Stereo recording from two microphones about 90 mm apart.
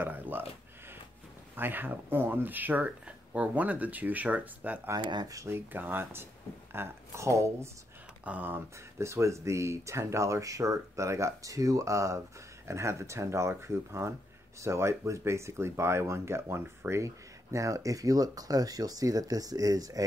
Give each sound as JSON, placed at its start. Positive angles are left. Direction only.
{"t": 0.0, "sound": "speech", "side_deg": -20}
{"t": 1.5, "sound": "speech", "side_deg": -20}
{"t": 4.9, "sound": "speech", "side_deg": -50}
{"t": 5.3, "sound": "speech", "side_deg": -35}
{"t": 5.7, "sound": "speech", "side_deg": -20}
{"t": 8.3, "sound": "speech", "side_deg": -20}